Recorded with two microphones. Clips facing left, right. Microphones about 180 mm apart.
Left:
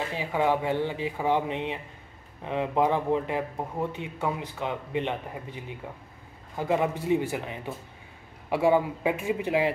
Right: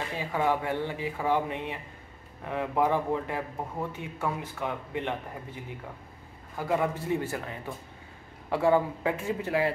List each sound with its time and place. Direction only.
0.2 s a man's voice: 15° left (ahead or behind)